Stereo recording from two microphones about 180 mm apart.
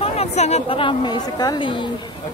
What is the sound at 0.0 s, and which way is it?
A woman's voice, 35° left (ahead or behind).